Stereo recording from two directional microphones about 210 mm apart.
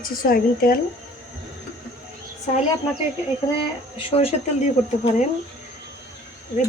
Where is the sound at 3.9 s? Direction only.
25° left (ahead or behind).